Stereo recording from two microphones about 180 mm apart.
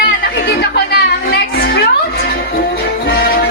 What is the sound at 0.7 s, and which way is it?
Music, 60° left (ahead or behind).